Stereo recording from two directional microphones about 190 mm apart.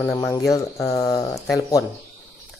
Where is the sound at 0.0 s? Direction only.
15° left (ahead or behind).